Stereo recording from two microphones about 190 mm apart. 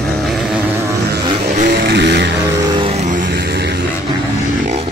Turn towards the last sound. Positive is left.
turn(degrees=-30)  # may be behind; listen again after turning